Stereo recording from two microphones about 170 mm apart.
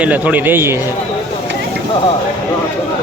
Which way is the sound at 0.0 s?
10° right (ahead or behind).